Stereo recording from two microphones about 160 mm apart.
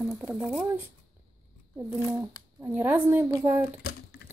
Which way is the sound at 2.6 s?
10° right (ahead or behind).